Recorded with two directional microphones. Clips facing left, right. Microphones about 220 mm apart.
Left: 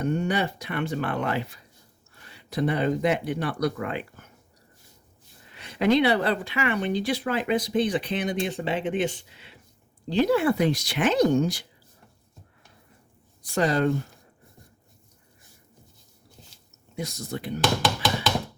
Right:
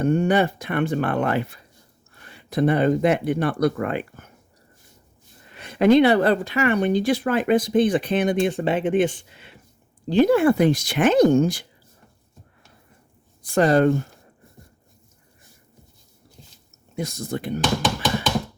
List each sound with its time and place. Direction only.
0.0 s speech: 50° right (ahead or behind)
5.5 s speech: 50° right (ahead or behind)
13.4 s speech: 50° right (ahead or behind)
16.9 s speech: 50° right (ahead or behind)